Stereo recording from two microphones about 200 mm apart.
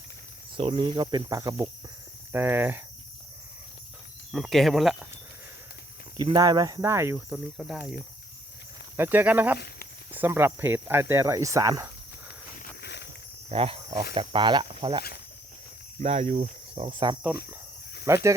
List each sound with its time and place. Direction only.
0.5 s cricket: 25° right (ahead or behind)
2.3 s speech: 10° right (ahead or behind)
4.3 s speech: centre (ahead or behind)
6.1 s speech: 20° right (ahead or behind); by 7.8 s 5° right (ahead or behind)
9.0 s speech: 10° right (ahead or behind)
9.6 s speech: 50° left (ahead or behind)
10.1 s speech: 10° right (ahead or behind)
12.5 s a sound: 55° left (ahead or behind)
13.5 s speech: 30° right (ahead or behind)
14.2 s cricket: 25° right (ahead or behind)
16.0 s speech: 35° right (ahead or behind)
16.7 s cricket: 25° right (ahead or behind)
18.0 s speech: 15° right (ahead or behind)